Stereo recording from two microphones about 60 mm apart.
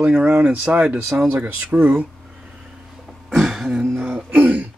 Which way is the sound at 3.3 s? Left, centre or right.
Centre.